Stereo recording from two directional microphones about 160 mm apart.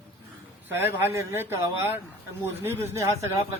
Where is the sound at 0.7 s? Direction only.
15° right (ahead or behind).